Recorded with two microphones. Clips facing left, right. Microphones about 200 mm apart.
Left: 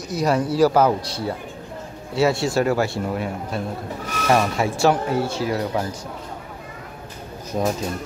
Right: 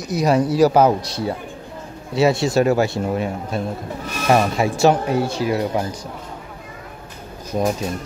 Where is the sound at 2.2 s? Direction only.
20° right (ahead or behind).